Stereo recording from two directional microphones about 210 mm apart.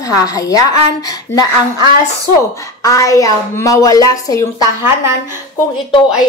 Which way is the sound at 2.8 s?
15° left (ahead or behind).